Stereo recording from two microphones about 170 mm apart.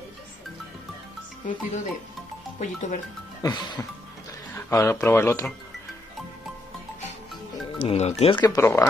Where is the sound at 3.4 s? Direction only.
25° left (ahead or behind).